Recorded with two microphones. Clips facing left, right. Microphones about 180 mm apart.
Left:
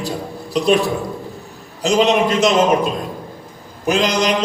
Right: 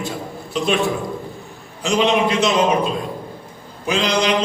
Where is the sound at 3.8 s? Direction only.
40° left (ahead or behind).